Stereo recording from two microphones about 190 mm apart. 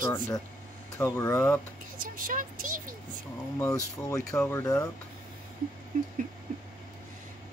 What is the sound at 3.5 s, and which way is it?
Speech, 15° left (ahead or behind).